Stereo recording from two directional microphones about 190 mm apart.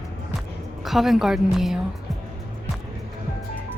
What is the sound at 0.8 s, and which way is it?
Speech, centre (ahead or behind).